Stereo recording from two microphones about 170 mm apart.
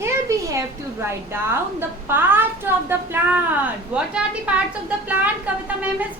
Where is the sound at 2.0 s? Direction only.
10° right (ahead or behind).